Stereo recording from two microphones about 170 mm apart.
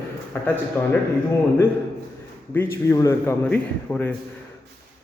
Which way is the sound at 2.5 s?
15° left (ahead or behind).